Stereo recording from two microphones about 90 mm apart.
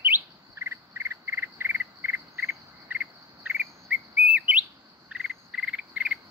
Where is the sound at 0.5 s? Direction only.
30° right (ahead or behind).